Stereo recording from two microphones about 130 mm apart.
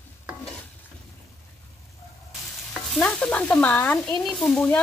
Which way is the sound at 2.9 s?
5° left (ahead or behind).